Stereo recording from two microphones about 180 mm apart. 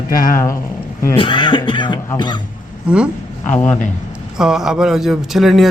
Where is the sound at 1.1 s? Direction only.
30° left (ahead or behind).